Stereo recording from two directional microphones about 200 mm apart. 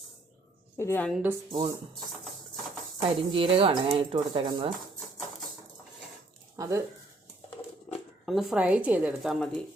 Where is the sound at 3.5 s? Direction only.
30° right (ahead or behind).